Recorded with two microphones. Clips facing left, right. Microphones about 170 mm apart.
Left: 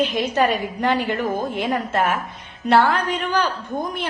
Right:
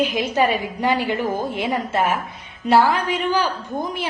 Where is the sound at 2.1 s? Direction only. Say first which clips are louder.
Even; 50° left (ahead or behind).